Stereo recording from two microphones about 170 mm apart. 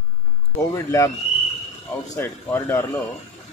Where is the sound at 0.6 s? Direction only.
20° left (ahead or behind).